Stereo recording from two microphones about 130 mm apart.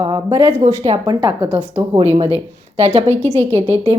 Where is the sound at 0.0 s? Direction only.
35° right (ahead or behind).